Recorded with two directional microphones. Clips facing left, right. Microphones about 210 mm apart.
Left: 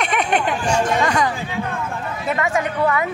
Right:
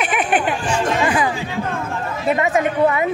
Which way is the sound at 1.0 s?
5° right (ahead or behind).